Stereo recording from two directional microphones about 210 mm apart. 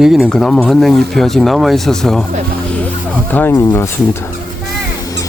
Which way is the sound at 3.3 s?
10° left (ahead or behind).